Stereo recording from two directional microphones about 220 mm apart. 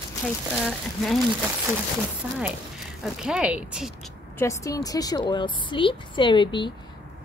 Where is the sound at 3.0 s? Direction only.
5° right (ahead or behind).